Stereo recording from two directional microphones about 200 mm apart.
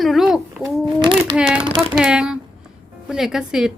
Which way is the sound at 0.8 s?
25° right (ahead or behind).